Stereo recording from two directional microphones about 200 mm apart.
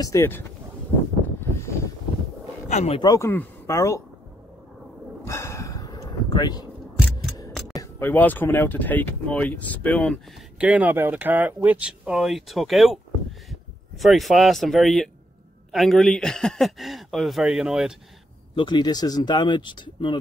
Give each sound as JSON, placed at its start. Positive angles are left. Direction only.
{"t": 0.0, "sound": "speech", "side_deg": 15}
{"t": 2.7, "sound": "speech", "side_deg": 30}
{"t": 5.2, "sound": "a sound", "side_deg": 15}
{"t": 7.7, "sound": "speech", "side_deg": 15}
{"t": 10.6, "sound": "speech", "side_deg": -5}
{"t": 18.5, "sound": "speech", "side_deg": 25}